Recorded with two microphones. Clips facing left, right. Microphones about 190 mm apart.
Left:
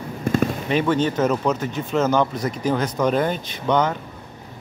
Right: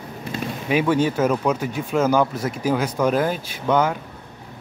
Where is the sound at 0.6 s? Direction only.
10° right (ahead or behind).